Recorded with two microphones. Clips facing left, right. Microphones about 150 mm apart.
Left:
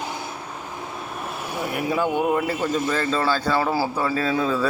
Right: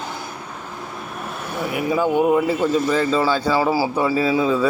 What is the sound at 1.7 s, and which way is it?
Speech, centre (ahead or behind).